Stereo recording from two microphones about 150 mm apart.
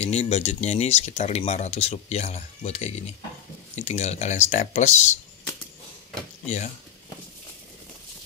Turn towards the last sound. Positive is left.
turn(degrees=50)  # may be behind; listen again after turning